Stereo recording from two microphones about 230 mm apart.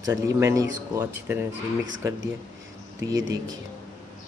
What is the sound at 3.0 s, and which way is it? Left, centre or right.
Speech, centre.